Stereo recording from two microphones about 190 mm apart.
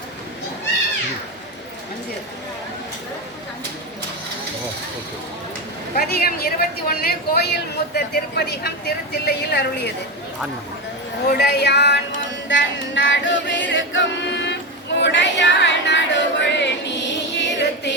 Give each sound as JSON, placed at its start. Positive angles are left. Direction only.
{"t": 6.0, "sound": "speech", "side_deg": 55}
{"t": 11.3, "sound": "speech", "side_deg": 60}
{"t": 12.5, "sound": "singing", "side_deg": 75}
{"t": 17.4, "sound": "a sound", "side_deg": 65}